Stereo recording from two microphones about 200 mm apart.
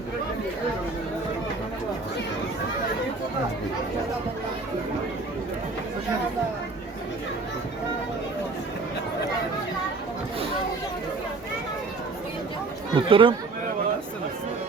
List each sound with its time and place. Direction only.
12.9 s speech: 25° right (ahead or behind)